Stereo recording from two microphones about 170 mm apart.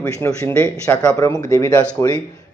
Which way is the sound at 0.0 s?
10° left (ahead or behind).